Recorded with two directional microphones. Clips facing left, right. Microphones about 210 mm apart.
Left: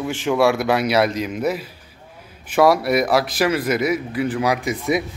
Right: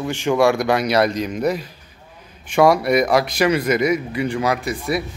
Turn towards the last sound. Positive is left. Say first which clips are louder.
# left 2 dB
turn(degrees=20)  # may be behind; listen again after turning